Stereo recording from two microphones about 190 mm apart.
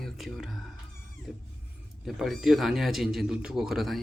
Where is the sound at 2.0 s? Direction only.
Centre (ahead or behind).